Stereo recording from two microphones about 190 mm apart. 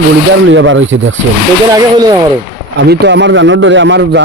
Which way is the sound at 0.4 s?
75° right (ahead or behind).